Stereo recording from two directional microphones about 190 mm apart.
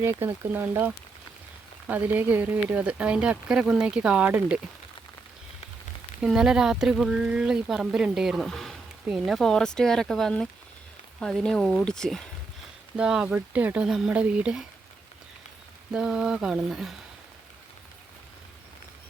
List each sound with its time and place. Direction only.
0.0 s speech: 15° right (ahead or behind)
6.2 s speech: 5° right (ahead or behind)
15.9 s speech: 5° right (ahead or behind)